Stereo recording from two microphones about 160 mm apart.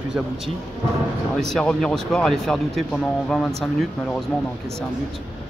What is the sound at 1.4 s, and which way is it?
Speech, 5° left (ahead or behind).